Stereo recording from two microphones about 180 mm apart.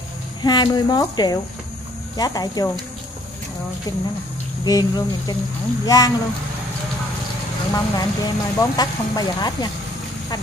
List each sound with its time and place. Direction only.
0.4 s speech: 25° left (ahead or behind)
4.6 s speech: 20° left (ahead or behind)
7.7 s speech: 20° left (ahead or behind)